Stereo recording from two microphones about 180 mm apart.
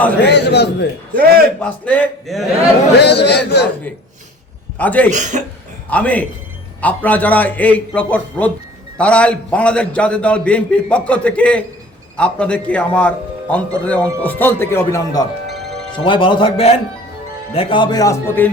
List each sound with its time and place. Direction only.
0.3 s speech: 65° left (ahead or behind)
1.1 s a man's voice: 55° right (ahead or behind)
1.5 s a man's voice: 5° left (ahead or behind)
3.0 s speech: 65° left (ahead or behind)
4.8 s a man's voice: 10° left (ahead or behind)
5.1 s speech: 40° right (ahead or behind)
5.9 s a man's voice: 10° left (ahead or behind)